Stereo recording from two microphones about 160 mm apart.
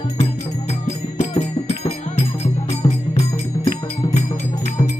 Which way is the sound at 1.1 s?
45° left (ahead or behind).